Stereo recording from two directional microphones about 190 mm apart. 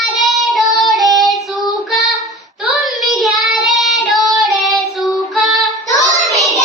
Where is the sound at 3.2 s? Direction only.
Centre (ahead or behind).